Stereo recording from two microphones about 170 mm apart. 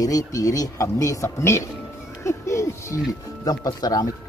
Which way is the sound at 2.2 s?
15° left (ahead or behind).